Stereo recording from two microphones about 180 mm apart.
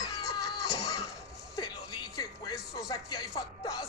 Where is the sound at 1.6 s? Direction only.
20° left (ahead or behind).